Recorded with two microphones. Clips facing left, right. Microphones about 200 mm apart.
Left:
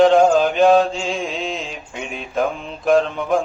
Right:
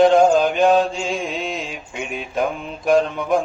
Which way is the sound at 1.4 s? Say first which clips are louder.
Left 1 dB; centre (ahead or behind).